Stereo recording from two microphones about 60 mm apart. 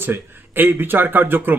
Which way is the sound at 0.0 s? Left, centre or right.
Right.